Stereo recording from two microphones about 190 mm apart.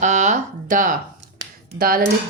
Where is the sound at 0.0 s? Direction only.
40° right (ahead or behind).